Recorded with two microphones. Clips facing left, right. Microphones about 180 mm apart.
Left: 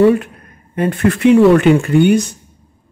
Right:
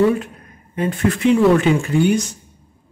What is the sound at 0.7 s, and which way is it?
Speech, 60° left (ahead or behind).